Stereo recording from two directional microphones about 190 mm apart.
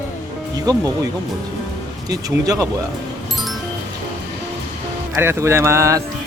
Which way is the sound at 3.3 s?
Centre (ahead or behind).